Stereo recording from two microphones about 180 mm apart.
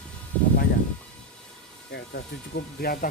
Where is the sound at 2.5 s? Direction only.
65° left (ahead or behind).